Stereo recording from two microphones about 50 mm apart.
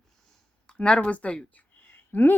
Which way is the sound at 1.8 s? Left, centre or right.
Left.